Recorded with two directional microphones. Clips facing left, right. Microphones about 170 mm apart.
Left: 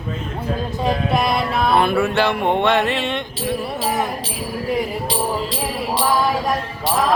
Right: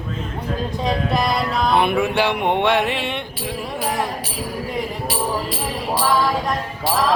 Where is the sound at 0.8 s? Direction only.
Centre (ahead or behind).